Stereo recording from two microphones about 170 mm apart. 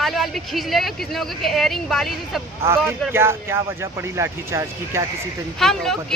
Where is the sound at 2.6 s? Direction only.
15° right (ahead or behind).